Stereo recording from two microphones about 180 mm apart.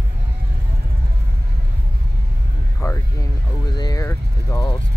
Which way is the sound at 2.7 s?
15° left (ahead or behind).